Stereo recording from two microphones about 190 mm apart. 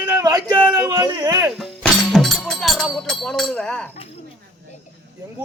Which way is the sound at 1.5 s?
Centre (ahead or behind).